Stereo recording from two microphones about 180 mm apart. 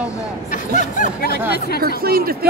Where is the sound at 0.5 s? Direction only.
45° left (ahead or behind).